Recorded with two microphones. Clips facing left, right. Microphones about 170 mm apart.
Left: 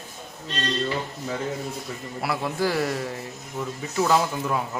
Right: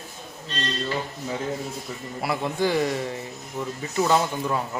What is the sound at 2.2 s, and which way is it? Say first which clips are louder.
Speech: right 1 dB; centre (ahead or behind).